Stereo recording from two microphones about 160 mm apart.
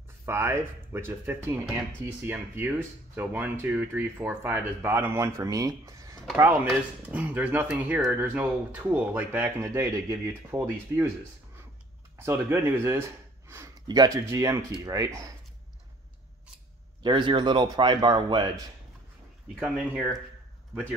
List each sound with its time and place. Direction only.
0.2 s speech: 15° right (ahead or behind)
12.2 s speech: 15° right (ahead or behind)
17.0 s speech: 30° right (ahead or behind)